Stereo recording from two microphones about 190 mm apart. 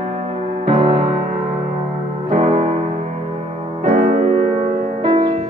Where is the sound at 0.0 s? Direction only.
30° right (ahead or behind).